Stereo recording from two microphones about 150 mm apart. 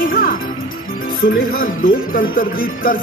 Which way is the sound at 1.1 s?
75° left (ahead or behind).